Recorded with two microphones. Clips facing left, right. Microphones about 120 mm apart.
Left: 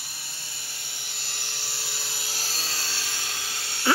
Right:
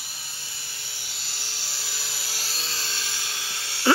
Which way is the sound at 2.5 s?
10° left (ahead or behind).